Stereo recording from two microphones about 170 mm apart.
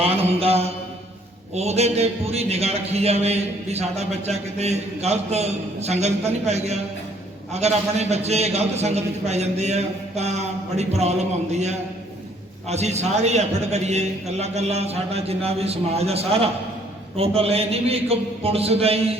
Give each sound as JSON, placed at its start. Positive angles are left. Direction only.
{"t": 0.0, "sound": "mantra", "side_deg": -35}
{"t": 1.5, "sound": "a man's voice", "side_deg": -40}